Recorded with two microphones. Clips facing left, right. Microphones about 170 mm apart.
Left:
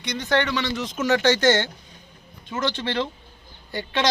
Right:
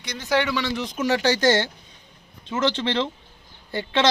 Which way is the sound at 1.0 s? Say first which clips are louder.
Left 1 dB; 30° right (ahead or behind).